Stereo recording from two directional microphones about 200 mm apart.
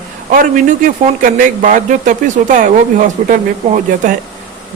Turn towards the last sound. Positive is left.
turn(degrees=-40)  # may be behind; listen again after turning